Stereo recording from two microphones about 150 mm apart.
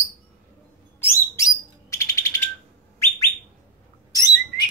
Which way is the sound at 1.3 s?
20° left (ahead or behind).